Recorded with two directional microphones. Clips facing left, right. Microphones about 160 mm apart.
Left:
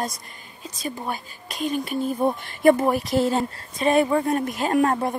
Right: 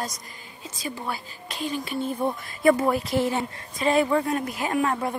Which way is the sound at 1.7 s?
50° left (ahead or behind).